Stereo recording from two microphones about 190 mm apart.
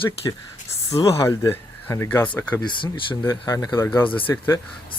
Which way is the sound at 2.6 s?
25° left (ahead or behind).